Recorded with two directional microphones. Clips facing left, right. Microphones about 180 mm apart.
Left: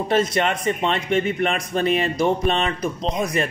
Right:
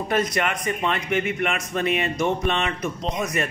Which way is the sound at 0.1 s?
25° left (ahead or behind).